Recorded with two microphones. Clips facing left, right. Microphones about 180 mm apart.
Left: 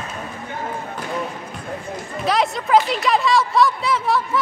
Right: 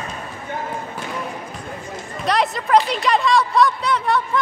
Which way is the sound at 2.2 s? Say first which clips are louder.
Even; centre (ahead or behind).